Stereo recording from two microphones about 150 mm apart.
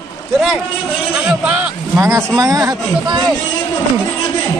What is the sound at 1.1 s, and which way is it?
A man's voice, 5° right (ahead or behind).